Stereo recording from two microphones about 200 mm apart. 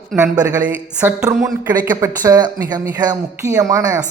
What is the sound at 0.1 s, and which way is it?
Speech, centre (ahead or behind).